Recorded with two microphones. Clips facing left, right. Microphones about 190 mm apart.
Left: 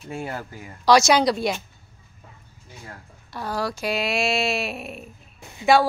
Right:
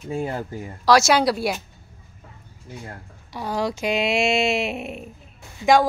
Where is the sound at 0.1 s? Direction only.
20° right (ahead or behind).